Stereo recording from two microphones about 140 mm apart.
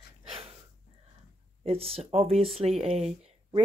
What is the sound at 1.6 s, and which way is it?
Speech, 45° right (ahead or behind).